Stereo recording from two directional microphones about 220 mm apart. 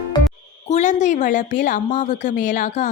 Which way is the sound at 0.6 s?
35° left (ahead or behind).